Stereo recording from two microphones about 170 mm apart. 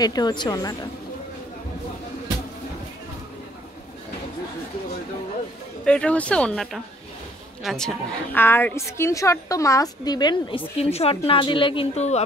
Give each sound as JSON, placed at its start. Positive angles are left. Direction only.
{"t": 0.0, "sound": "a woman's voice", "side_deg": 25}
{"t": 5.9, "sound": "a woman's voice", "side_deg": 5}